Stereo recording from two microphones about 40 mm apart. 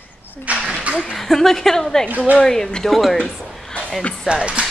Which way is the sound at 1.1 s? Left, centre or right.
Centre.